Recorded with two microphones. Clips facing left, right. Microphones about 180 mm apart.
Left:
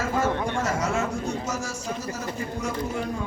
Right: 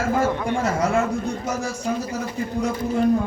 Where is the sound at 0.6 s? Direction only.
60° right (ahead or behind).